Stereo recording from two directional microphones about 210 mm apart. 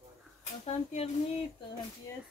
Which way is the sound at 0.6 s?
30° left (ahead or behind).